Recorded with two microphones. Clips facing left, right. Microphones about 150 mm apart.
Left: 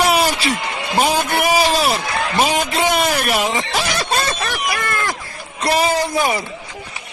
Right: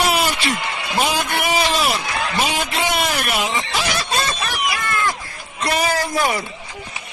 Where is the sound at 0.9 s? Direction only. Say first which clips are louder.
Left 4 dB; 40° left (ahead or behind); by 6.4 s 20° left (ahead or behind).